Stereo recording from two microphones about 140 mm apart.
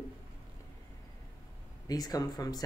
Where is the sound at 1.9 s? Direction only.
25° left (ahead or behind).